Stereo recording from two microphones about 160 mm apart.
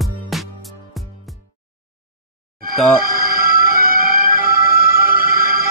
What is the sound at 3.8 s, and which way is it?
Music, 65° right (ahead or behind).